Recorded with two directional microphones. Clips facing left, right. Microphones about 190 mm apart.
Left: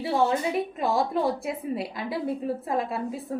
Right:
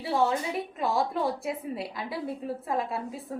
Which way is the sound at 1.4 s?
20° left (ahead or behind).